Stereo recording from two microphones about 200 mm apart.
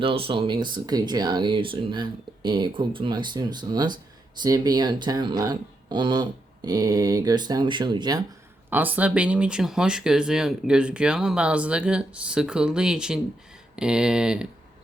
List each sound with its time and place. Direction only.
0.0 s speech: 25° right (ahead or behind)
8.7 s speech: 10° right (ahead or behind)